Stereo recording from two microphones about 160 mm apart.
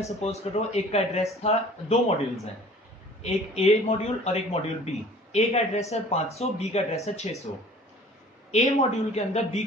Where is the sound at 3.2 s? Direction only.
40° left (ahead or behind).